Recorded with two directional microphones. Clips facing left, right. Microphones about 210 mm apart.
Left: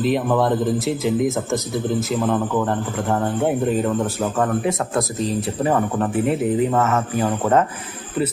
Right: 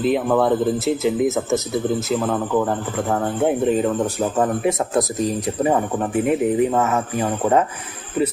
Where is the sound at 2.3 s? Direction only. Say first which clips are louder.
Even; 5° right (ahead or behind).